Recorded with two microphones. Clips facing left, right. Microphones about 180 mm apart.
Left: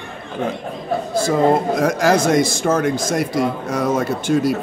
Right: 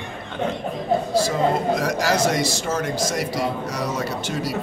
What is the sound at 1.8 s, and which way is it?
Speech, 50° left (ahead or behind).